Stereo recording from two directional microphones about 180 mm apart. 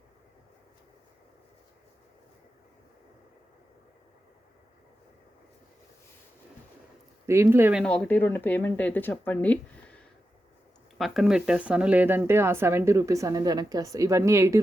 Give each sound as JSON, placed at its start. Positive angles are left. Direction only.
{"t": 7.3, "sound": "speech", "side_deg": -15}
{"t": 7.9, "sound": "speech", "side_deg": 5}